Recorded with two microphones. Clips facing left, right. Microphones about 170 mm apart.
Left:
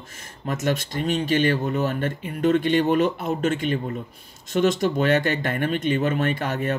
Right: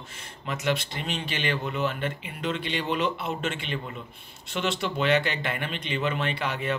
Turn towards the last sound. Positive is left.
turn(degrees=45)  # may be behind; listen again after turning